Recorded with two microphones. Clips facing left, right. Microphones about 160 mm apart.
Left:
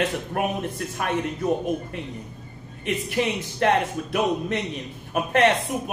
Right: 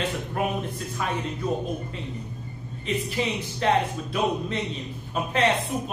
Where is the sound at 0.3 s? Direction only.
60° left (ahead or behind).